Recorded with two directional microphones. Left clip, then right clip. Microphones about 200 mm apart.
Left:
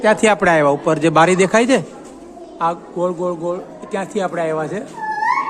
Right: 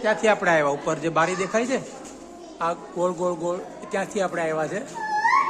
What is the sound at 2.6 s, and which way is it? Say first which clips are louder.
Speech: left 6 dB; 10° left (ahead or behind).